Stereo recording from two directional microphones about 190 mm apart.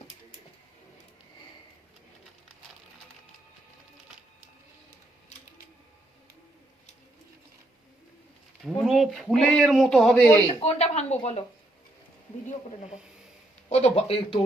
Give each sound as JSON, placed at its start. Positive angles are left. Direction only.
{"t": 8.6, "sound": "speech", "side_deg": 0}
{"t": 10.6, "sound": "speech", "side_deg": 35}
{"t": 13.7, "sound": "speech", "side_deg": 35}